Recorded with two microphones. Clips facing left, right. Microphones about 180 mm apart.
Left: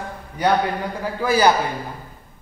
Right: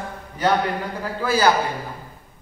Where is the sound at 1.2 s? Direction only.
15° left (ahead or behind).